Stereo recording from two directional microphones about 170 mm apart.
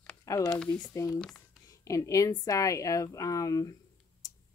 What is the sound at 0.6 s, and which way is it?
Speech, 5° left (ahead or behind).